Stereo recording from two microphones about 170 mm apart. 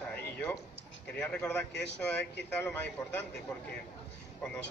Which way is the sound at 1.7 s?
90° left.